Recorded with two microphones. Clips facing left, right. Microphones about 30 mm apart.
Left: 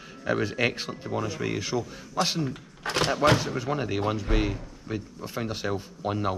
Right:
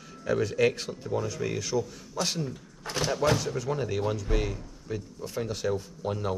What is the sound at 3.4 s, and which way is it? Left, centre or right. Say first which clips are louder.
Speech: left 1 dB; left.